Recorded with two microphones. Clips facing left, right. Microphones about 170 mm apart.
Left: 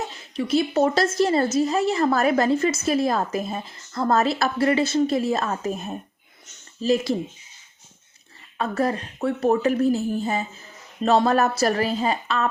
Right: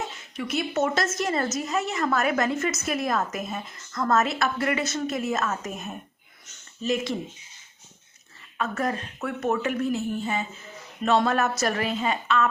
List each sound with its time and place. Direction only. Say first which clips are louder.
0.3 s a woman's voice: left 6 dB; 30° left (ahead or behind)
8.5 s a woman's voice: left 4 dB; 35° left (ahead or behind)